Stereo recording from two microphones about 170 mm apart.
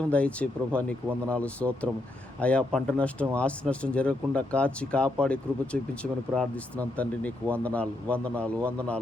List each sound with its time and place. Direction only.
0.1 s speech: 10° left (ahead or behind)